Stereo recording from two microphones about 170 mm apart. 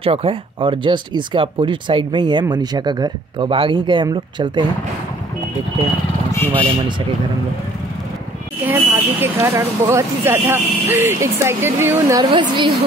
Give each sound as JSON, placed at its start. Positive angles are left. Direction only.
{"t": 0.0, "sound": "speech", "side_deg": -35}
{"t": 8.6, "sound": "speech", "side_deg": -15}
{"t": 12.2, "sound": "speech", "side_deg": -30}